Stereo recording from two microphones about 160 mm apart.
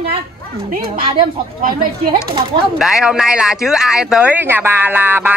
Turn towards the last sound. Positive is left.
turn(degrees=-10)  # may be behind; listen again after turning